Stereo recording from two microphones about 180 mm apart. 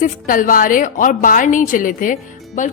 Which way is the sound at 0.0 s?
50° left (ahead or behind).